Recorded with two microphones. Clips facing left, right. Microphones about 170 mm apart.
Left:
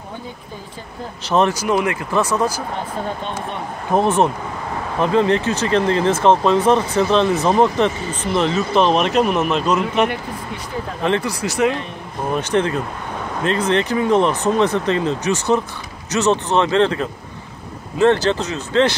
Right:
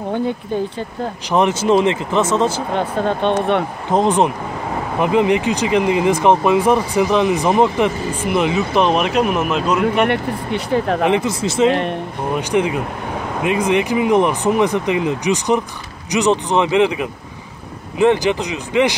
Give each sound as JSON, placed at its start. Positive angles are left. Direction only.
{"t": 1.3, "sound": "speech", "side_deg": -20}
{"t": 2.7, "sound": "speech", "side_deg": -70}
{"t": 3.9, "sound": "speech", "side_deg": -15}
{"t": 9.8, "sound": "speech", "side_deg": -60}
{"t": 11.1, "sound": "speech", "side_deg": -20}
{"t": 11.7, "sound": "speech", "side_deg": -70}
{"t": 12.4, "sound": "speech", "side_deg": -10}